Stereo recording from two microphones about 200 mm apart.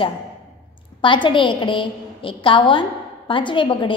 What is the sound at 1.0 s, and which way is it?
A woman's voice, 25° left (ahead or behind).